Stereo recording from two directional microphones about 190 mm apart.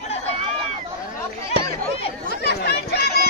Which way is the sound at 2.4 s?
55° left (ahead or behind).